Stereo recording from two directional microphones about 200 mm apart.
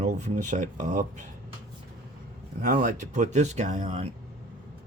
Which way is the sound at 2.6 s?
45° right (ahead or behind).